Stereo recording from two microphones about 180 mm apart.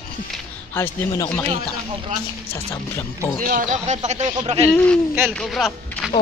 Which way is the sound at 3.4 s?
50° right (ahead or behind).